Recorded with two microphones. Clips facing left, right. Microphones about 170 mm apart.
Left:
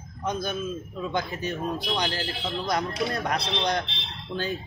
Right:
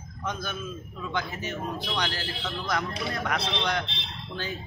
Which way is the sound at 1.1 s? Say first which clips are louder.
Left 2 dB; 35° left (ahead or behind).